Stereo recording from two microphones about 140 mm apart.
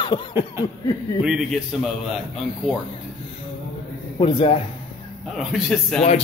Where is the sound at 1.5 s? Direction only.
Centre (ahead or behind).